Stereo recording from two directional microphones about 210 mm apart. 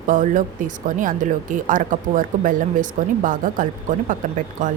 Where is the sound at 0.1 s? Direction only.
40° right (ahead or behind).